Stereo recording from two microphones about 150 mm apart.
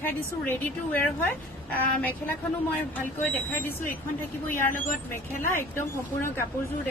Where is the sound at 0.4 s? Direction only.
15° left (ahead or behind).